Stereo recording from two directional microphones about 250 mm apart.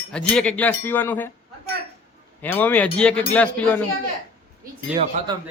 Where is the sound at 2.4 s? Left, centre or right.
Centre.